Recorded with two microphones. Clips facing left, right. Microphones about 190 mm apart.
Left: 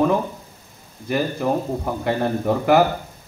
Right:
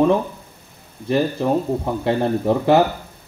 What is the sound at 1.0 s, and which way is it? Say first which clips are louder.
A man's voice: right 3 dB; 30° right (ahead or behind).